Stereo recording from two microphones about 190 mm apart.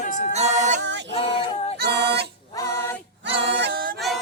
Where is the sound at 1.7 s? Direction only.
60° right (ahead or behind).